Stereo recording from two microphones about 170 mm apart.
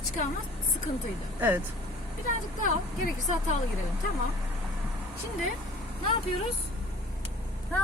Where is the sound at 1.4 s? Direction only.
10° right (ahead or behind).